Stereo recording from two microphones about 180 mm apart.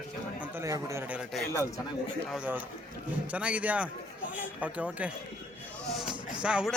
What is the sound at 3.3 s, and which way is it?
A man's voice, 5° right (ahead or behind).